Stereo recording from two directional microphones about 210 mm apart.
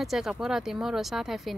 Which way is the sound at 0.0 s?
Centre (ahead or behind).